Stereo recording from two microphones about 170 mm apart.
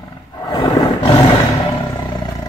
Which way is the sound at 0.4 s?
25° left (ahead or behind).